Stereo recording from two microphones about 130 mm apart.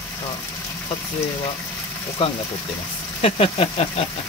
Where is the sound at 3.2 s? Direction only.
50° left (ahead or behind).